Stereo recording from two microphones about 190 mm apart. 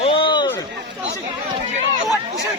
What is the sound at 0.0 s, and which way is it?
Run, 25° left (ahead or behind).